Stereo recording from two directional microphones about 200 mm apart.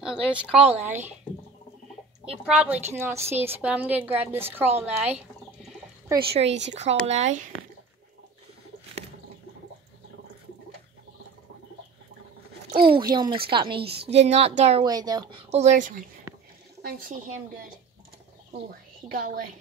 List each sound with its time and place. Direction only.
0.0 s a woman's voice: 5° right (ahead or behind)
2.4 s a woman's voice: 5° right (ahead or behind)
4.7 s bird: 10° right (ahead or behind)
6.7 s a woman's voice: 35° right (ahead or behind)
12.7 s a woman's voice: 25° right (ahead or behind)
14.9 s speech: 20° right (ahead or behind)
15.5 s a woman's voice: 35° right (ahead or behind)
19.0 s a woman's voice: 45° right (ahead or behind)